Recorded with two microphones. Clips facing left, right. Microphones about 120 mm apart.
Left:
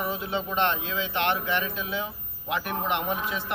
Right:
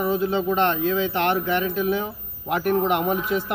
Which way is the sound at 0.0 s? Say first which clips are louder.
Right 8 dB; 40° right (ahead or behind).